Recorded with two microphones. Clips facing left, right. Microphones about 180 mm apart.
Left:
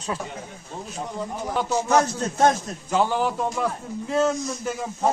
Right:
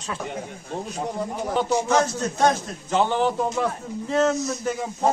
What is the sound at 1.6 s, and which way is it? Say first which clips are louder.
Speech: right 2 dB; 15° right (ahead or behind).